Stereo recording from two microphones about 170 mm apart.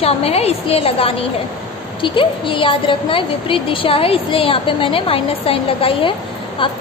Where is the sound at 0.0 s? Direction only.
35° left (ahead or behind).